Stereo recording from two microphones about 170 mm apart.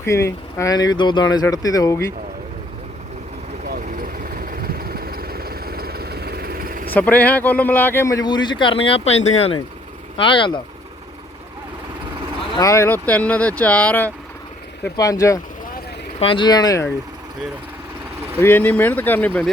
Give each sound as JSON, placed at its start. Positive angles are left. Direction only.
{"t": 0.0, "sound": "speech", "side_deg": 15}
{"t": 3.7, "sound": "vehicle", "side_deg": -55}
{"t": 6.9, "sound": "speech", "side_deg": 10}
{"t": 12.5, "sound": "speech", "side_deg": 20}
{"t": 14.8, "sound": "speech", "side_deg": 20}
{"t": 18.3, "sound": "speech", "side_deg": 10}